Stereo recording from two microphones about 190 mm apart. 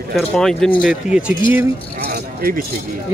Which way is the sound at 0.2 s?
5° left (ahead or behind).